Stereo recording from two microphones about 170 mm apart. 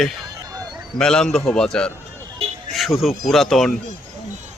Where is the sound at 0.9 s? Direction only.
5° left (ahead or behind).